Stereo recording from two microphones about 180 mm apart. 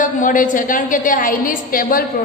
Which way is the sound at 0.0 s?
45° left (ahead or behind).